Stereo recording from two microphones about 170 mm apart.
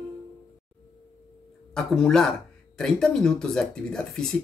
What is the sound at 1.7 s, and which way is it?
Speech, 5° left (ahead or behind).